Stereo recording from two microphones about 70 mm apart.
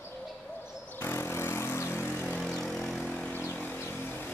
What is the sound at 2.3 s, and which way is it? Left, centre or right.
Vehicle, centre.